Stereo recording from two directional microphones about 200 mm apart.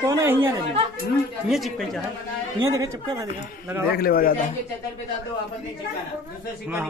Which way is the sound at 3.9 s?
50° left (ahead or behind).